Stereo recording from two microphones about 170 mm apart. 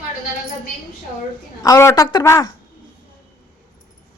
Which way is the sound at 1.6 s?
20° left (ahead or behind).